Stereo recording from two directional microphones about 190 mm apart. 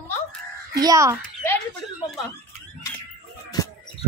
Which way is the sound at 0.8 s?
20° right (ahead or behind).